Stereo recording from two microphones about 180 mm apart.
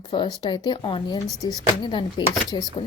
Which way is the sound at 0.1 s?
25° left (ahead or behind).